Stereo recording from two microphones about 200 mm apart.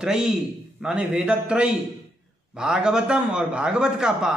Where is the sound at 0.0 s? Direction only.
5° right (ahead or behind).